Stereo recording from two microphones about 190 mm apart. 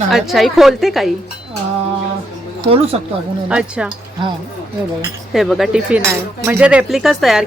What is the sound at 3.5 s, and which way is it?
Speech, 5° right (ahead or behind).